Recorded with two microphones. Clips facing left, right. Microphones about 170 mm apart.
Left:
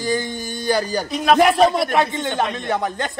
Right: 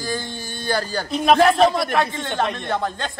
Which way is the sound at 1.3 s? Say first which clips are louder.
Left 2 dB; 15° left (ahead or behind).